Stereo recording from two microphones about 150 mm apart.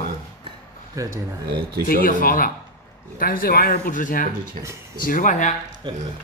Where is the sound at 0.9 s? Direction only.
20° right (ahead or behind).